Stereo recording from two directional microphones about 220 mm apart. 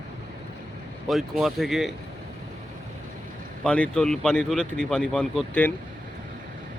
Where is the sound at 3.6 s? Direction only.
5° left (ahead or behind).